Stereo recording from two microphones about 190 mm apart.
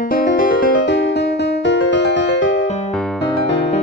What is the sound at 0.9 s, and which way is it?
Music, 70° left (ahead or behind).